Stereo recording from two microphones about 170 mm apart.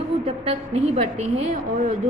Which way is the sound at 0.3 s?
40° right (ahead or behind).